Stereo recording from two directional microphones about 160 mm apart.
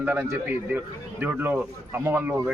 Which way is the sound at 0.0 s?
10° right (ahead or behind).